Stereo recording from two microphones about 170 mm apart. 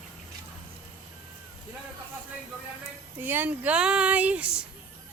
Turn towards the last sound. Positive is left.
turn(degrees=-10)  # may be behind; listen again after turning